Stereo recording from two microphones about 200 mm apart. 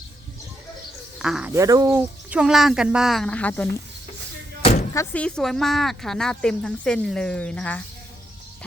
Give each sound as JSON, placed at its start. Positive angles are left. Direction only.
{"t": 1.2, "sound": "speech", "side_deg": -5}
{"t": 1.6, "sound": "speech", "side_deg": -15}
{"t": 4.6, "sound": "door", "side_deg": 30}
{"t": 4.9, "sound": "speech", "side_deg": 5}